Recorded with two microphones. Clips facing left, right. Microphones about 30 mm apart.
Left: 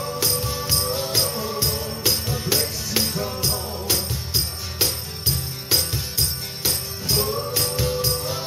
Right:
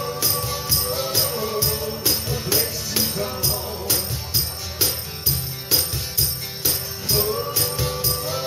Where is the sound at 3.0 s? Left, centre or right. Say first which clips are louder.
Left 1 dB; centre.